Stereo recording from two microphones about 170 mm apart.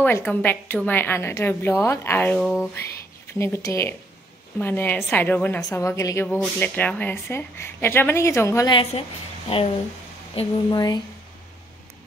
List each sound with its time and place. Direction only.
0.0 s a woman's voice: 10° left (ahead or behind)
2.4 s speech: centre (ahead or behind)
3.3 s a woman's voice: 15° left (ahead or behind)
10.3 s speech: 25° left (ahead or behind)